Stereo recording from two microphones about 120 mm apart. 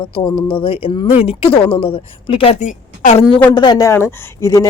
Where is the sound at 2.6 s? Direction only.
85° left.